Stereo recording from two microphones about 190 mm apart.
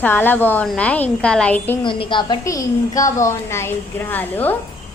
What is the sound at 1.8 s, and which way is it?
A woman's voice, 25° left (ahead or behind).